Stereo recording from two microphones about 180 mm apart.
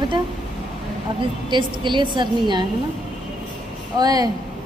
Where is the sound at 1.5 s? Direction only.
25° right (ahead or behind).